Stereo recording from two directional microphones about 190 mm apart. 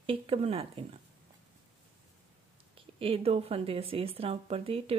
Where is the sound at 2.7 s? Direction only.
30° right (ahead or behind).